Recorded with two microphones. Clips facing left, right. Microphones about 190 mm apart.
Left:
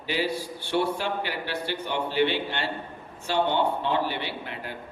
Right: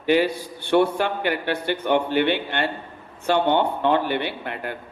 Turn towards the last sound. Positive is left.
turn(degrees=-60)  # may be behind; listen again after turning